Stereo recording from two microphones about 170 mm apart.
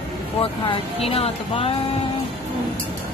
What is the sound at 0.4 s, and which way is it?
Speech, 35° left (ahead or behind).